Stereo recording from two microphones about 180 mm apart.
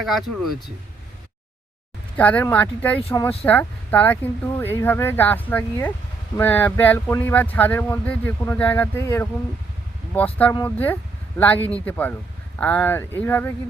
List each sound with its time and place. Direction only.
0.0 s speech: centre (ahead or behind)
2.1 s speech: 10° left (ahead or behind)